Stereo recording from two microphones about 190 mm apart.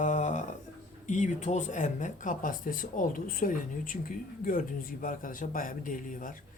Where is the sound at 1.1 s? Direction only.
40° left (ahead or behind).